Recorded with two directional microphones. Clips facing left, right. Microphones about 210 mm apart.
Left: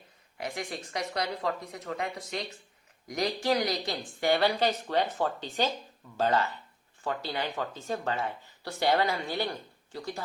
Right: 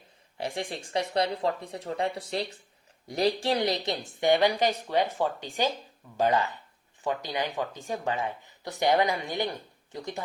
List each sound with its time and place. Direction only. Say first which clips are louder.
0.3 s speech: right 3 dB; 30° right (ahead or behind)